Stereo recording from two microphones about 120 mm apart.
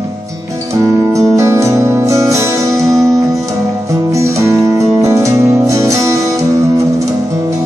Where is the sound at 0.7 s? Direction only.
25° right (ahead or behind).